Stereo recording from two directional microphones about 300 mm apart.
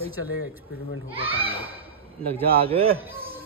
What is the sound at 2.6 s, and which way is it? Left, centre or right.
Speech, centre.